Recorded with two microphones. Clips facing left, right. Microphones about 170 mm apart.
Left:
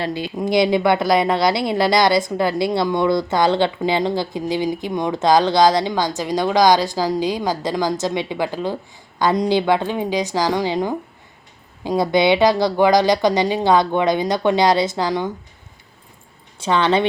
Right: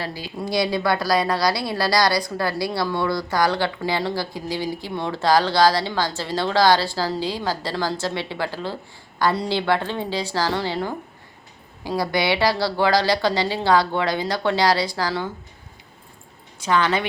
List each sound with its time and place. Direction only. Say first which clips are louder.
0.0 s a woman's voice: left 6 dB; 20° left (ahead or behind)
16.6 s a woman's voice: left 4 dB; 25° left (ahead or behind)